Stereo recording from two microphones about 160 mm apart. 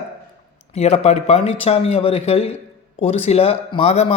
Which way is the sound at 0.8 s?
40° left (ahead or behind).